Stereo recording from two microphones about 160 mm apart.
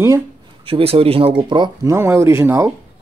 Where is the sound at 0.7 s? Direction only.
35° right (ahead or behind).